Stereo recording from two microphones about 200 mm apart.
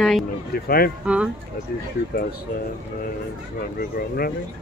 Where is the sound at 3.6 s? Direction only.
50° left (ahead or behind).